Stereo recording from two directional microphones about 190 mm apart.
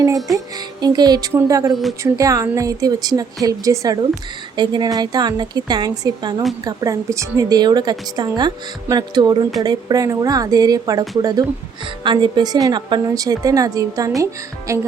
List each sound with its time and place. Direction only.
0.5 s a woman's voice: 20° right (ahead or behind)
1.7 s speech: centre (ahead or behind)
2.1 s a woman's voice: 15° right (ahead or behind)